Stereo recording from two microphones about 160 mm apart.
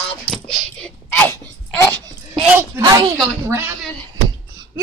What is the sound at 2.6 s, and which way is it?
Speech, 20° right (ahead or behind).